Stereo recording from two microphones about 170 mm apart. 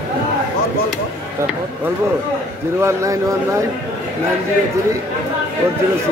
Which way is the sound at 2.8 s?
15° right (ahead or behind).